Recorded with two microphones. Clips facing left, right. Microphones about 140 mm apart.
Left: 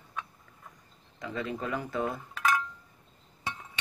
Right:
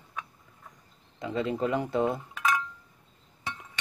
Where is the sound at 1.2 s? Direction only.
25° right (ahead or behind).